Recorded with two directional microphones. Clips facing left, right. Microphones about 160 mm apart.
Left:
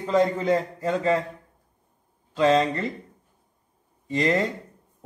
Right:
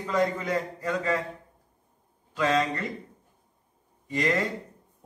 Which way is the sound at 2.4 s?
25° left (ahead or behind).